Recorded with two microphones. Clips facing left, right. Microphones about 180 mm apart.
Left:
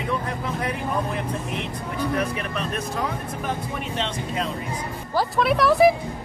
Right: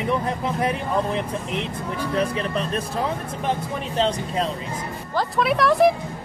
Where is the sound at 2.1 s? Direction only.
30° right (ahead or behind).